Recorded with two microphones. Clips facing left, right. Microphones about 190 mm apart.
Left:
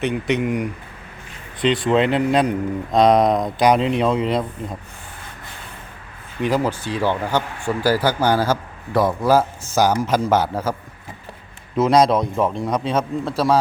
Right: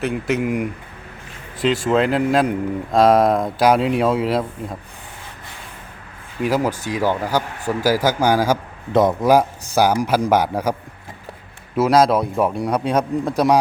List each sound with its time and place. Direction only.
0.0 s speech: 5° right (ahead or behind)
6.4 s a man's voice: 10° right (ahead or behind)
7.3 s speech: 40° right (ahead or behind)
7.9 s a man's voice: 10° right (ahead or behind)
11.8 s a man's voice: 5° right (ahead or behind)